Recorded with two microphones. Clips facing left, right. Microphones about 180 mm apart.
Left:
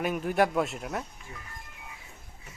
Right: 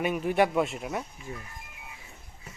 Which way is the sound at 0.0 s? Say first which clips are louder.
Right 1 dB; centre (ahead or behind).